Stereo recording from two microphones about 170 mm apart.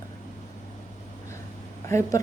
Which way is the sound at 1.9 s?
15° left (ahead or behind).